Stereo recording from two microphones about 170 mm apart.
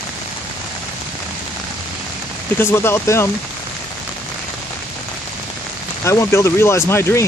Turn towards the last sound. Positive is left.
turn(degrees=15)  # may be behind; listen again after turning